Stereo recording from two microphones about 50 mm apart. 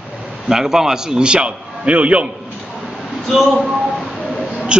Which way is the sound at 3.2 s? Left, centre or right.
Centre.